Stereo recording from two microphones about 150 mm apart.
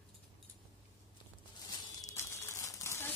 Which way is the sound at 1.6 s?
25° left (ahead or behind).